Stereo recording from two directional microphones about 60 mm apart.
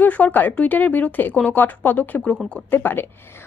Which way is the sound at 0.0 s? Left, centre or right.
Left.